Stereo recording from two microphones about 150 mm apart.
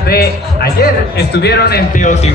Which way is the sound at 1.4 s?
90° left.